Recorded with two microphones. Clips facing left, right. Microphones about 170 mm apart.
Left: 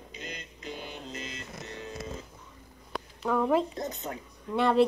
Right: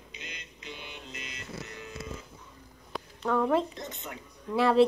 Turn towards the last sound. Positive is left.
turn(degrees=0)  # may be behind; listen again after turning